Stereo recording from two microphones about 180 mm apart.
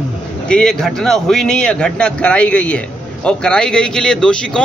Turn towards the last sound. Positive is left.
turn(degrees=5)  # may be behind; listen again after turning